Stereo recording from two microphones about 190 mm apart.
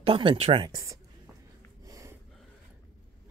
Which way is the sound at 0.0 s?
30° right (ahead or behind).